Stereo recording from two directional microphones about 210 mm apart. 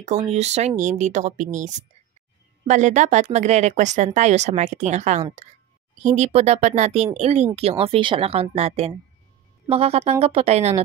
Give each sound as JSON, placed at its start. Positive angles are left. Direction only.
{"t": 0.3, "sound": "speech", "side_deg": -30}